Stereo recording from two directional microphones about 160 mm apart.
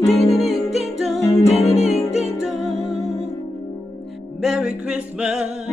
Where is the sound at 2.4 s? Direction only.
Centre (ahead or behind).